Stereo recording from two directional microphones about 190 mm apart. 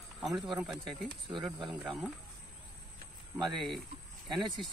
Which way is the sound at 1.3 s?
20° right (ahead or behind).